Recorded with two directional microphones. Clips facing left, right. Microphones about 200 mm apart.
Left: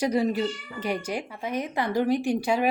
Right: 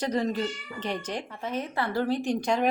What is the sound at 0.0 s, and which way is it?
A woman's voice, 10° left (ahead or behind).